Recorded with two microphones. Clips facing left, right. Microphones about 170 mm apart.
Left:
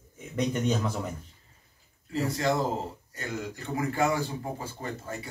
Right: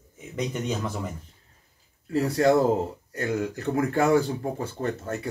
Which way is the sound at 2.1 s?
60° right (ahead or behind).